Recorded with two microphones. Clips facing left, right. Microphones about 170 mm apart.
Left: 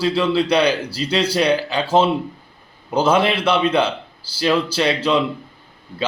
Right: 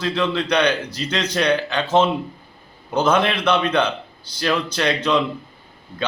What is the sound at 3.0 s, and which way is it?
A man's voice, 5° left (ahead or behind).